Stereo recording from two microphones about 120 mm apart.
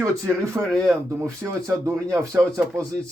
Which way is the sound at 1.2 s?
25° right (ahead or behind).